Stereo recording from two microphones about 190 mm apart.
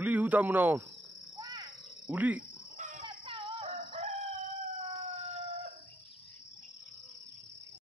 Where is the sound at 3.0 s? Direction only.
25° right (ahead or behind).